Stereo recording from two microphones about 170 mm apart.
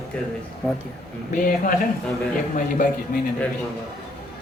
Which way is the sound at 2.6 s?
50° left (ahead or behind).